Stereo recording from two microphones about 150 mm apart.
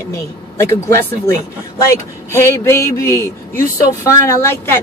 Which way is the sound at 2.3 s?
15° left (ahead or behind).